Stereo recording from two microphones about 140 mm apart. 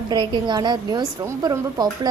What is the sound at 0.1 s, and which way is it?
A woman's voice, 30° right (ahead or behind).